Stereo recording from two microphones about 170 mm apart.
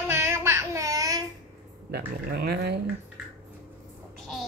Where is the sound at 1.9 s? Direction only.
75° right (ahead or behind).